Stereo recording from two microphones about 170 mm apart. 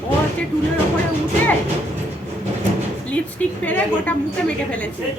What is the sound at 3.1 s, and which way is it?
A woman's voice, 10° left (ahead or behind).